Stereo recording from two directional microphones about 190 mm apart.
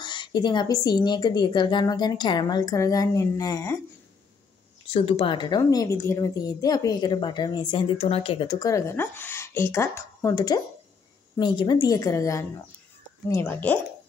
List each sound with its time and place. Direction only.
0.0 s a woman's voice: 25° left (ahead or behind)
4.9 s a woman's voice: 30° left (ahead or behind); by 13.7 s 10° left (ahead or behind)